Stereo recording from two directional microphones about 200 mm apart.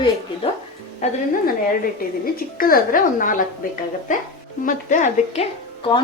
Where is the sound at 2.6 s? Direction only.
45° left (ahead or behind).